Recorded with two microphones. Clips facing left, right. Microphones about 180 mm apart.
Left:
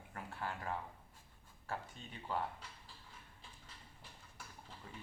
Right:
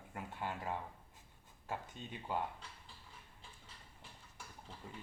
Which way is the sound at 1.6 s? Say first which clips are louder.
Right 1 dB; 15° right (ahead or behind).